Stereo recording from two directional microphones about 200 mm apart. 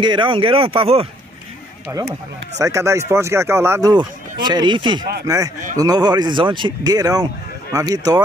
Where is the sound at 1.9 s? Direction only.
10° right (ahead or behind).